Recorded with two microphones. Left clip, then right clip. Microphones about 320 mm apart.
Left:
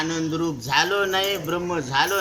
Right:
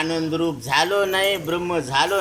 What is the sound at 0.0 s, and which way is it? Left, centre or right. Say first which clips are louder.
Speech: right 3 dB; centre.